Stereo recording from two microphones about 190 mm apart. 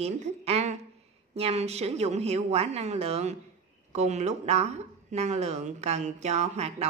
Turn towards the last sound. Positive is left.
turn(degrees=-35)  # may be behind; listen again after turning